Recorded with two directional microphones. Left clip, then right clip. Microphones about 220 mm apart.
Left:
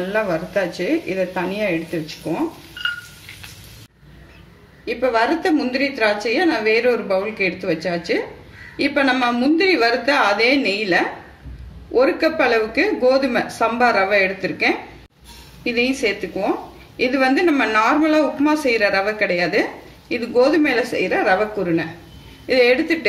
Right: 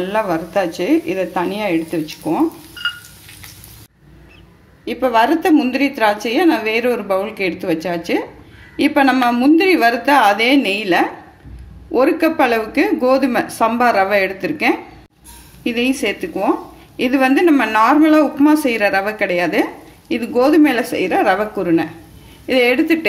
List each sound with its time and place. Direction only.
0.0 s a woman's voice: 40° right (ahead or behind)
4.8 s a woman's voice: 40° right (ahead or behind)